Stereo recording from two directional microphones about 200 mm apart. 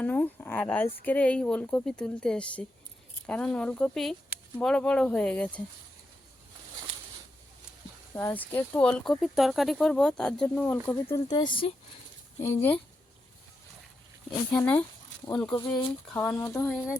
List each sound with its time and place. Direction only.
0.0 s speech: 10° left (ahead or behind)
8.1 s speech: 10° left (ahead or behind)
12.4 s speech: 10° left (ahead or behind)
14.5 s speech: 10° left (ahead or behind)